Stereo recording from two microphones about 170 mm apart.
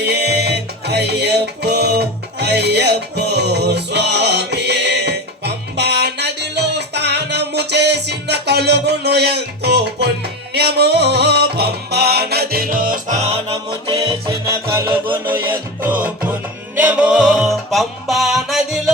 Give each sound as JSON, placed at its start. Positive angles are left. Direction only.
{"t": 0.0, "sound": "music", "side_deg": -80}
{"t": 14.4, "sound": "music", "side_deg": -15}